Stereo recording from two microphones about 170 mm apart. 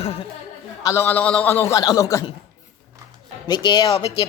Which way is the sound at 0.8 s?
15° left (ahead or behind).